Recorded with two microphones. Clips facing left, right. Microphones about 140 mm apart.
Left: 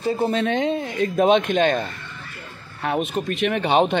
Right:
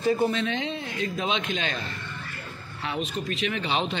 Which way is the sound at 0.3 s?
50° left (ahead or behind).